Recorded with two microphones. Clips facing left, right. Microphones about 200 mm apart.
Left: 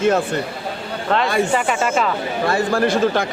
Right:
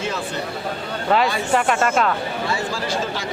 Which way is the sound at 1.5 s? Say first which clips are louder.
Even; centre (ahead or behind).